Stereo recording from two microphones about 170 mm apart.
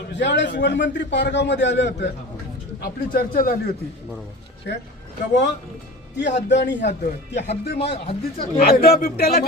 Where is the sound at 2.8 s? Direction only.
60° left (ahead or behind).